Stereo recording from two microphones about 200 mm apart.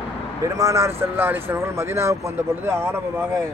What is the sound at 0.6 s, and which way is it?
Speech, 15° right (ahead or behind).